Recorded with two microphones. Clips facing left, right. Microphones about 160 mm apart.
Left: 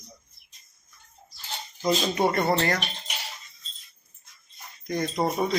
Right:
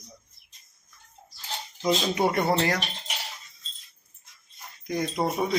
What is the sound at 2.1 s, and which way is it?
Speech, 10° right (ahead or behind).